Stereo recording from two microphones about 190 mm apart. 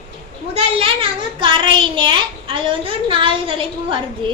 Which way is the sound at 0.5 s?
30° right (ahead or behind).